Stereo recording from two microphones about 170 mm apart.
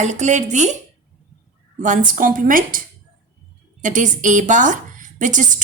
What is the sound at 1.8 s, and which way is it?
Speech, 50° right (ahead or behind).